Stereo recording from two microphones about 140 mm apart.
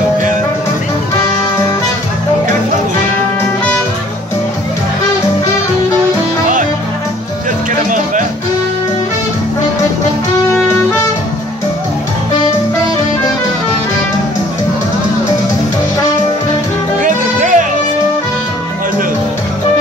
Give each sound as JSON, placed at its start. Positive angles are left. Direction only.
{"t": 17.0, "sound": "music", "side_deg": -65}